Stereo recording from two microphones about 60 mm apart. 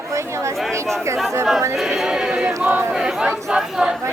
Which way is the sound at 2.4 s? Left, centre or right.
Right.